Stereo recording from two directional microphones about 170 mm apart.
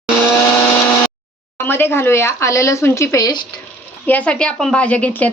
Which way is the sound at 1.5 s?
15° left (ahead or behind).